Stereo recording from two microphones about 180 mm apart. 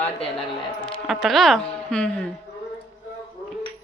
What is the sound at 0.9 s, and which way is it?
Speech, centre (ahead or behind).